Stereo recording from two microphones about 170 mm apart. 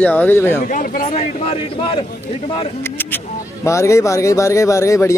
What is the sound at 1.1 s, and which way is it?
A man's voice, 35° left (ahead or behind).